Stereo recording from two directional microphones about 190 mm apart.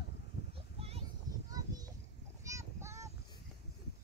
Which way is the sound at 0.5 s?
30° right (ahead or behind).